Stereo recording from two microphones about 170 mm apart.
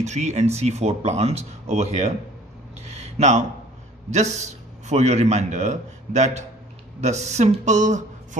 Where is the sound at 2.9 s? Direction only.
40° right (ahead or behind).